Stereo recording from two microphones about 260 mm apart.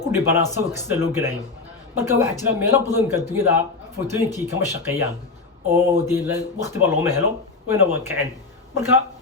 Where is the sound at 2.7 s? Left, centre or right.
Centre.